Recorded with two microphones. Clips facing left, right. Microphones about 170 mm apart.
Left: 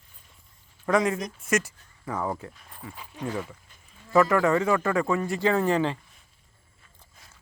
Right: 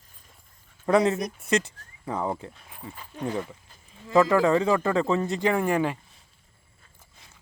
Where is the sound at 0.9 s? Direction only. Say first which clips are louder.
Right 2 dB; 30° right (ahead or behind); by 6.0 s 10° right (ahead or behind).